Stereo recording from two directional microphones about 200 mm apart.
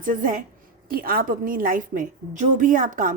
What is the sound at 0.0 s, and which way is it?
A woman's voice, 40° right (ahead or behind).